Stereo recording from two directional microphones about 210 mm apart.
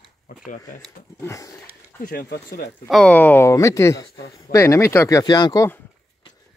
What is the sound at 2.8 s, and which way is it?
Speech, centre (ahead or behind).